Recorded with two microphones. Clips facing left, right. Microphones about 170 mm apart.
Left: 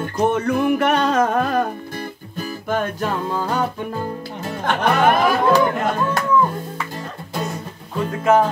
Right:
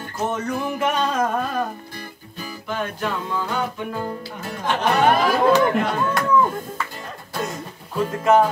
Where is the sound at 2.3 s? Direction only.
45° left (ahead or behind).